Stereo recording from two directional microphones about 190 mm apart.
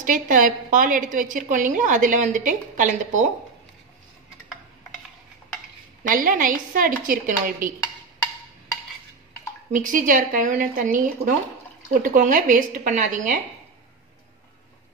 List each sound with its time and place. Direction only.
0.0 s a woman's voice: 45° right (ahead or behind)
6.0 s a woman's voice: 45° right (ahead or behind)
9.7 s a woman's voice: 45° right (ahead or behind)